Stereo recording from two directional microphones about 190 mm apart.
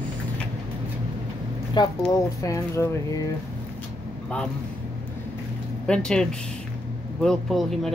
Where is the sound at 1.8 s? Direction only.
20° left (ahead or behind).